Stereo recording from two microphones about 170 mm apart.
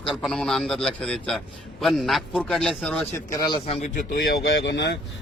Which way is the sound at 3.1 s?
20° left (ahead or behind).